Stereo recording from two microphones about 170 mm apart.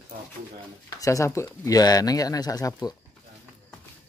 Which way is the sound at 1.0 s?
20° left (ahead or behind).